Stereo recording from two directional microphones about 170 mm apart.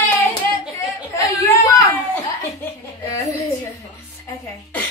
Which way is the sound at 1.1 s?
20° left (ahead or behind).